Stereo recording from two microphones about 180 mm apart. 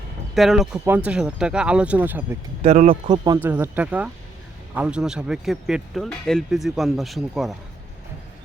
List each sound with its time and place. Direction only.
0.3 s speech: centre (ahead or behind)
2.6 s speech: 40° right (ahead or behind)
3.1 s speech: 20° right (ahead or behind)
3.4 s speech: 10° right (ahead or behind)